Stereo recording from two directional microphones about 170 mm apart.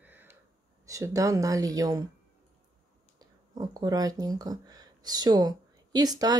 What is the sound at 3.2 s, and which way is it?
Speech, 20° right (ahead or behind).